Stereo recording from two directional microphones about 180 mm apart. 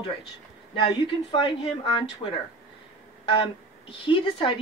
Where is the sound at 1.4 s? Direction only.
30° left (ahead or behind).